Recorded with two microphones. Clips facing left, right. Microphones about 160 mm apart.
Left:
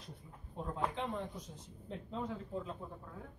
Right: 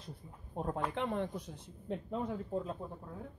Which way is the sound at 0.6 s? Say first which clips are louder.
Right 3 dB; 60° right (ahead or behind).